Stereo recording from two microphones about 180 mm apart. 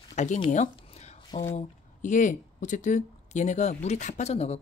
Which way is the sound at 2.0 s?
45° left (ahead or behind).